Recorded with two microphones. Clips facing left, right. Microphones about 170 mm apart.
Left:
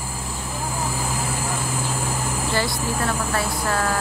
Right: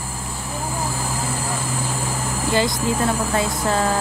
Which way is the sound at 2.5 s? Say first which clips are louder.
Right 6 dB; 20° right (ahead or behind).